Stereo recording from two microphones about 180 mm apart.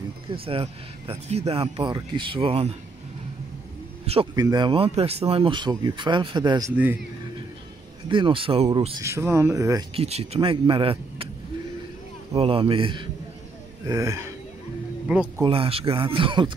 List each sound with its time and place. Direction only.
0.3 s speech: 30° right (ahead or behind)
4.0 s a sound: 35° right (ahead or behind)
4.4 s speech: 25° right (ahead or behind)
8.1 s speech: 30° right (ahead or behind)
9.0 s speech: 15° right (ahead or behind)
9.9 s speech: 35° right (ahead or behind)
12.4 s speech: 30° right (ahead or behind)
13.8 s speech: 20° right (ahead or behind)
15.3 s speech: 30° right (ahead or behind)